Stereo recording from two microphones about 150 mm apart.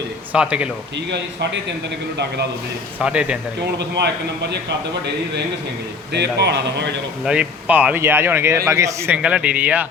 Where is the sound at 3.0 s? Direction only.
5° right (ahead or behind).